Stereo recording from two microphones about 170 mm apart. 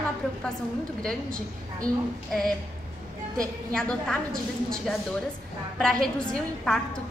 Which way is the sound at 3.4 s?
5° left (ahead or behind).